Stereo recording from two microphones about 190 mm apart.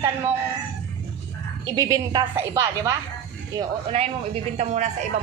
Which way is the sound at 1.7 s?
15° right (ahead or behind).